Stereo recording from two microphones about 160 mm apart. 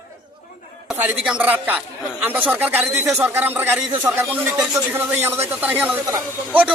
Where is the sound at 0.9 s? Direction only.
5° right (ahead or behind).